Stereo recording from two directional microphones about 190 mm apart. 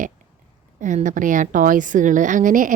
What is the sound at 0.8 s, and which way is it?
A woman's voice, 40° right (ahead or behind).